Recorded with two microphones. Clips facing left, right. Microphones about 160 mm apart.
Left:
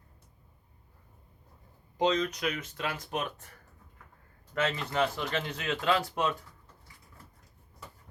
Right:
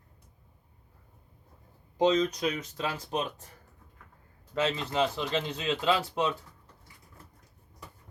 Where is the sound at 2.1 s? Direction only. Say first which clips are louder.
Right 3 dB; 20° right (ahead or behind).